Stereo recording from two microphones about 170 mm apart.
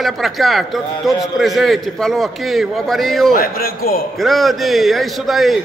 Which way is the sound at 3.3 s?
60° left (ahead or behind).